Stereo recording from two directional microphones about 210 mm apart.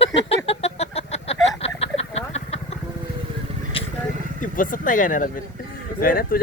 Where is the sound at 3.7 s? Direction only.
25° left (ahead or behind).